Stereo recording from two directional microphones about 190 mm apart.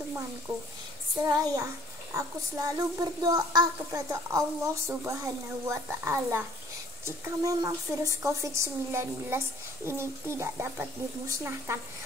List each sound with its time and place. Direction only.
1.2 s a child's voice: 20° right (ahead or behind)